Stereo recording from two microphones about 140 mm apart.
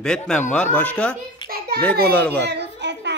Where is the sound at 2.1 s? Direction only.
10° left (ahead or behind).